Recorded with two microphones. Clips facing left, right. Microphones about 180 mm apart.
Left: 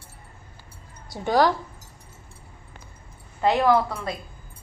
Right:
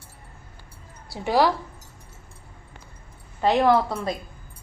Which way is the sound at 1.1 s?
5° right (ahead or behind).